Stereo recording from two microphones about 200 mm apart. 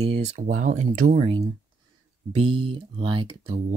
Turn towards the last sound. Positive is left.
turn(degrees=-25)  # may be behind; listen again after turning